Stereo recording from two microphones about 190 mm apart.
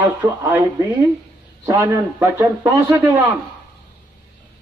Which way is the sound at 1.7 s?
15° right (ahead or behind).